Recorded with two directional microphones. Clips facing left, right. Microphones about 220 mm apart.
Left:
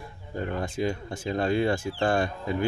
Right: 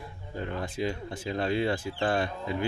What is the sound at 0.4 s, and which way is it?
Speech, 45° left (ahead or behind).